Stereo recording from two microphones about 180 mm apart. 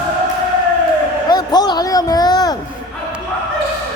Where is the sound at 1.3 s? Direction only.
20° left (ahead or behind).